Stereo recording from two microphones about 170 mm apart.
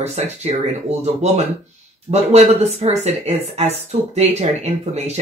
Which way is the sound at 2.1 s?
40° right (ahead or behind).